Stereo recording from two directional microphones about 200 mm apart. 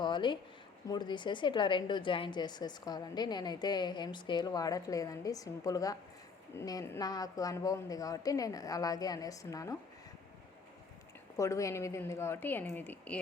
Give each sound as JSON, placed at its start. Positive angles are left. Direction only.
{"t": 0.0, "sound": "a sound", "side_deg": 25}
{"t": 0.9, "sound": "a woman's voice", "side_deg": 20}
{"t": 11.3, "sound": "speech", "side_deg": 15}